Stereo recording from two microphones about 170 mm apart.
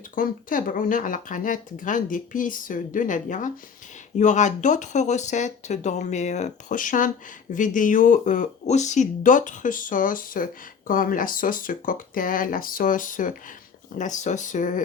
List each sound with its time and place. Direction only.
0.2 s speech: 55° left (ahead or behind)